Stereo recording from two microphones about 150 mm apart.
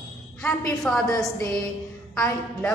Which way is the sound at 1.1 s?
20° left (ahead or behind).